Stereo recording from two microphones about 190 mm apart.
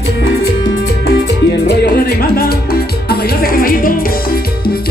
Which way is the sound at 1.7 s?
60° left (ahead or behind).